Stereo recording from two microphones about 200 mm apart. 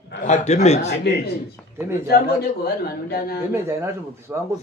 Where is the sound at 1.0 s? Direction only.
55° left (ahead or behind).